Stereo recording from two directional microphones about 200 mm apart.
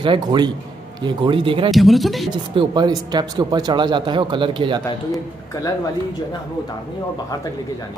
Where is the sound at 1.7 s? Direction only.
Centre (ahead or behind).